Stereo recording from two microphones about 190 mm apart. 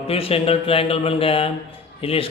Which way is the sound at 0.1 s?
30° left (ahead or behind).